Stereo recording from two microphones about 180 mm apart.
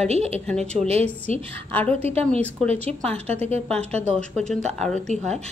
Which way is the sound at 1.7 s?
10° left (ahead or behind).